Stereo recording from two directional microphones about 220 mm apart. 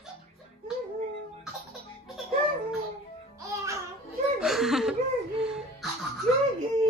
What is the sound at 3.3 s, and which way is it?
Music, 15° right (ahead or behind).